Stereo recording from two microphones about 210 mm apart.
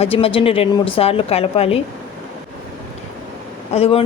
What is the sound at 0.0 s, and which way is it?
Speech, 25° left (ahead or behind).